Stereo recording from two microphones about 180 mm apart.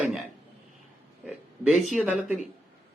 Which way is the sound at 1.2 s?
5° right (ahead or behind).